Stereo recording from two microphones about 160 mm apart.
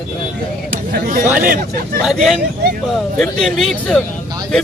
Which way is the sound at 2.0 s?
Centre (ahead or behind).